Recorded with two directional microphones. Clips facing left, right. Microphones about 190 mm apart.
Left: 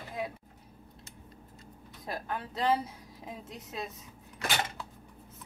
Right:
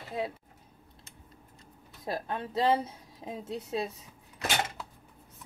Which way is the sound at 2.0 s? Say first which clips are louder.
Right 3 dB; 25° right (ahead or behind).